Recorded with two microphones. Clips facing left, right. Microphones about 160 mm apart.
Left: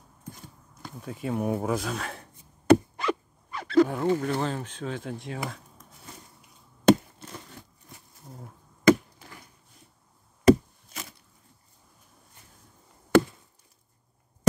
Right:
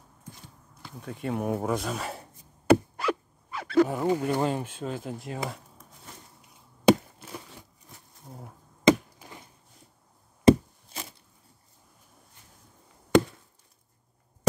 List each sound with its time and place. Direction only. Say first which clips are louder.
1.0 s speech: left 1 dB; centre (ahead or behind)
10.4 s wood: even; 30° right (ahead or behind)